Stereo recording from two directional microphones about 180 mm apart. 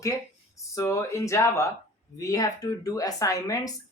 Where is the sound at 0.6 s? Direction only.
15° left (ahead or behind).